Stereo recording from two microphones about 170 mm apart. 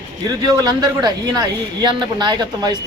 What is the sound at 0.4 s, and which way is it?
Speech, 20° right (ahead or behind).